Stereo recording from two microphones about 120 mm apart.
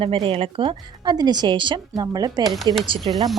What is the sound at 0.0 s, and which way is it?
Speech, 50° right (ahead or behind).